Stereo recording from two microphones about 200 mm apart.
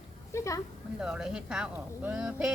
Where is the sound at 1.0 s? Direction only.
5° right (ahead or behind).